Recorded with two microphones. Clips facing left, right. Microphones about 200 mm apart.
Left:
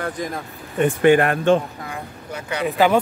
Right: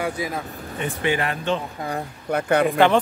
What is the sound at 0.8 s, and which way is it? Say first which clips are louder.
Speech: left 9 dB; 50° left (ahead or behind).